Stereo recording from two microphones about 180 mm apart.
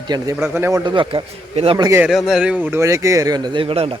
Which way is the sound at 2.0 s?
Centre (ahead or behind).